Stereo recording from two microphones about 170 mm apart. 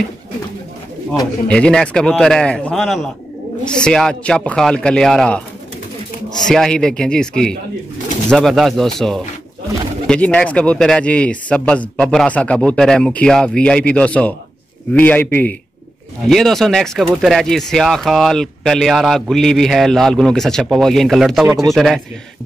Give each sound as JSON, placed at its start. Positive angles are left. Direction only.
{"t": 1.5, "sound": "speech", "side_deg": 5}
{"t": 6.4, "sound": "a man's voice", "side_deg": 5}
{"t": 21.5, "sound": "speech", "side_deg": -15}
{"t": 21.7, "sound": "speech", "side_deg": 0}